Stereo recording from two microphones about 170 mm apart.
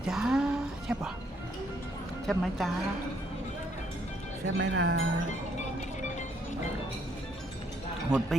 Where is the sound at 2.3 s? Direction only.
Centre (ahead or behind).